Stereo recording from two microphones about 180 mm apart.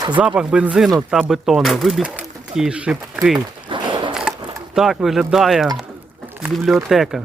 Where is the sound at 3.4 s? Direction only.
25° right (ahead or behind).